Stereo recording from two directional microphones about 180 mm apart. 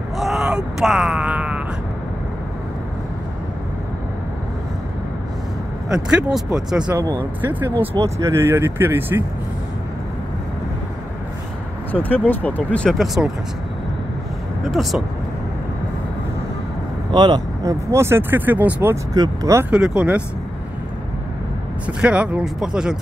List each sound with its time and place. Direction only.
0.2 s groan: centre (ahead or behind)
5.9 s speech: 5° right (ahead or behind)
7.0 s speech: 20° right (ahead or behind)
11.9 s speech: 10° left (ahead or behind)
14.6 s speech: centre (ahead or behind)
17.1 s speech: 25° right (ahead or behind)
19.1 s speech: 20° right (ahead or behind)
19.7 s speech: 5° right (ahead or behind)
21.8 s speech: 5° right (ahead or behind)